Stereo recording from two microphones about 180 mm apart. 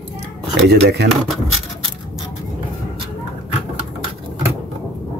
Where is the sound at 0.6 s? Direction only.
70° right (ahead or behind).